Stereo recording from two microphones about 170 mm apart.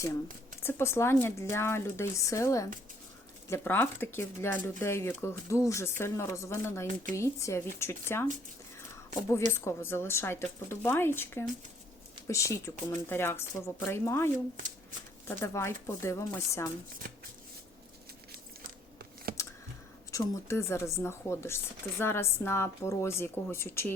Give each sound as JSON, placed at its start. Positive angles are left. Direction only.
{"t": 0.6, "sound": "speech", "side_deg": 15}
{"t": 9.5, "sound": "speech", "side_deg": 15}
{"t": 15.3, "sound": "speech", "side_deg": 15}
{"t": 17.0, "sound": "shuffling cards", "side_deg": -60}
{"t": 19.3, "sound": "a sound", "side_deg": -60}
{"t": 20.1, "sound": "speech", "side_deg": 15}